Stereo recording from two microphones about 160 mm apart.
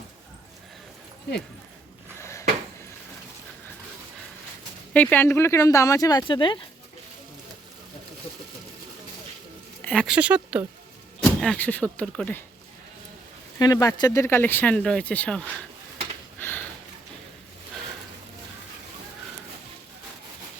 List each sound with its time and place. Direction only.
4.9 s speech: 10° left (ahead or behind); by 6.6 s 30° left (ahead or behind)
9.8 s a sound: 5° left (ahead or behind)
10.1 s speech: 10° right (ahead or behind)
11.2 s speech: 5° left (ahead or behind)
13.6 s speech: 20° left (ahead or behind); by 15.4 s 5° left (ahead or behind)
16.4 s a sound: 15° left (ahead or behind)